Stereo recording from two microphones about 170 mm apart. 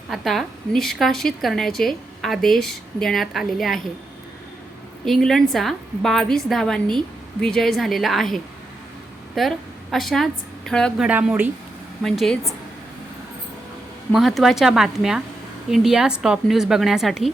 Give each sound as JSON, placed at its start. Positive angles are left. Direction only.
{"t": 0.1, "sound": "a woman's voice", "side_deg": 0}
{"t": 5.0, "sound": "a woman's voice", "side_deg": 0}
{"t": 12.0, "sound": "a woman's voice", "side_deg": 0}
{"t": 14.1, "sound": "a woman's voice", "side_deg": 0}